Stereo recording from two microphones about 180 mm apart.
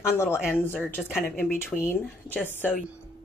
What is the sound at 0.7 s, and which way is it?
Speech, 10° left (ahead or behind).